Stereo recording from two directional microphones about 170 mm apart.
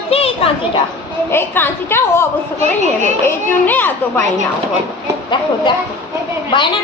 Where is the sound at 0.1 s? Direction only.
35° left (ahead or behind).